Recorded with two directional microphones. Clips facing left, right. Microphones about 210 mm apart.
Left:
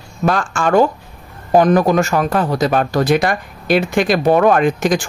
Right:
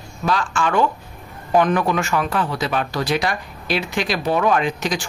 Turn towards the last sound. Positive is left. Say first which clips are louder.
# left 6 dB
turn(degrees=50)  # may be behind; listen again after turning